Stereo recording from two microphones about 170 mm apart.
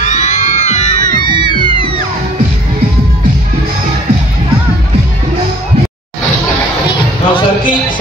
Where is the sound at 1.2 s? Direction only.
25° right (ahead or behind).